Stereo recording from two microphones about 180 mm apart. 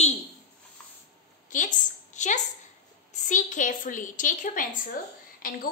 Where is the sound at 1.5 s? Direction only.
45° left (ahead or behind).